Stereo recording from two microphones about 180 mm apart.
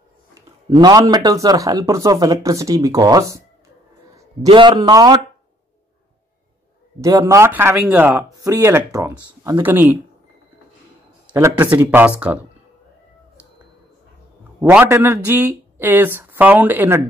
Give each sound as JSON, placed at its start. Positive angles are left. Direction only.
{"t": 0.7, "sound": "speech", "side_deg": -25}
{"t": 7.0, "sound": "speech", "side_deg": -20}
{"t": 11.2, "sound": "speech", "side_deg": -10}
{"t": 14.6, "sound": "speech", "side_deg": -10}